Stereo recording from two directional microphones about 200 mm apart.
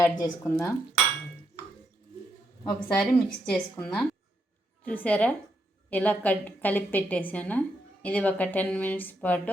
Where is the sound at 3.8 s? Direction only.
5° left (ahead or behind).